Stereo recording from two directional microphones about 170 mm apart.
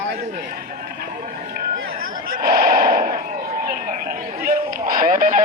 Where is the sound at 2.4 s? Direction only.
60° right (ahead or behind).